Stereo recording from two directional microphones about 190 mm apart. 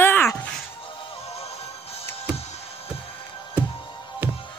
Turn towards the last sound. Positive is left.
turn(degrees=-10)  # may be behind; listen again after turning